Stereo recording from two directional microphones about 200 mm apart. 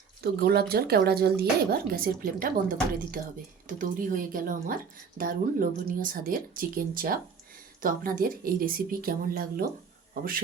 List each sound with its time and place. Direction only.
0.2 s speech: 50° right (ahead or behind)